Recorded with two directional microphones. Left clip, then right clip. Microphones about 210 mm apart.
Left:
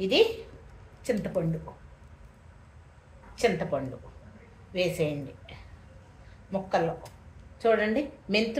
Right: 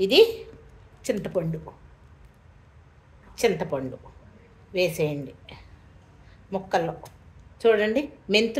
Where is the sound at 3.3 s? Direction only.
50° right (ahead or behind).